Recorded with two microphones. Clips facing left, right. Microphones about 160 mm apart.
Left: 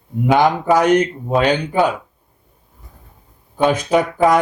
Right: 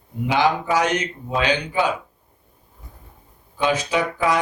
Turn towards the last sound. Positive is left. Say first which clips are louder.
# left 7 dB
turn(degrees=50)  # may be behind; listen again after turning